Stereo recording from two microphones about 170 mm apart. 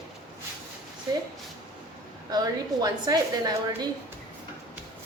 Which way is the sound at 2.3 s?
25° right (ahead or behind).